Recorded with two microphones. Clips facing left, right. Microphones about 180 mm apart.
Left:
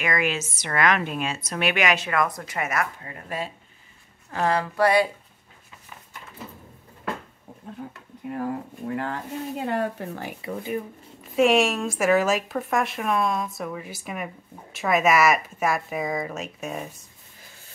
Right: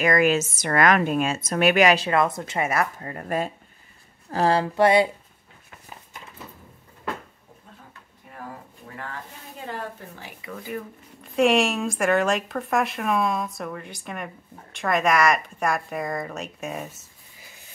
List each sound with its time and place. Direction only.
0.0 s a woman's voice: 40° right (ahead or behind)
3.0 s a woman's voice: 45° right (ahead or behind)
4.3 s a woman's voice: 30° right (ahead or behind)
9.7 s speech: 60° left (ahead or behind)
10.4 s speech: 25° left (ahead or behind)
11.2 s a woman's voice: centre (ahead or behind)